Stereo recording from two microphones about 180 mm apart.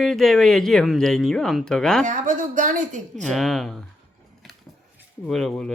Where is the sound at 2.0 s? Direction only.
45° right (ahead or behind).